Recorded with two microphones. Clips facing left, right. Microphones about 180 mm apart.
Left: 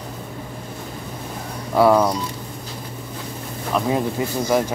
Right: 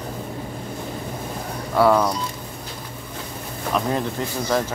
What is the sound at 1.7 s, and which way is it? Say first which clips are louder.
Speech: left 2 dB; 15° left (ahead or behind).